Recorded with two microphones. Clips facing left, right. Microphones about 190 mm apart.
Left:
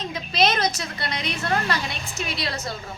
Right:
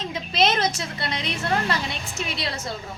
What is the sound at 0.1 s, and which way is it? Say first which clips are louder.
A woman's voice: even; 25° right (ahead or behind).